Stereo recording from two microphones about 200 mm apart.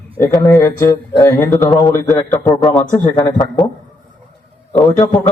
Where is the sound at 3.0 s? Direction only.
20° left (ahead or behind).